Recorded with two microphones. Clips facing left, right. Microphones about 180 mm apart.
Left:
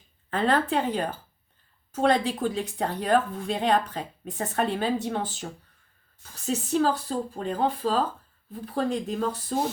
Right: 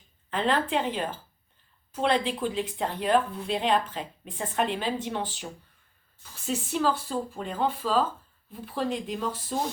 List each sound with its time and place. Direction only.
0.3 s speech: 40° left (ahead or behind)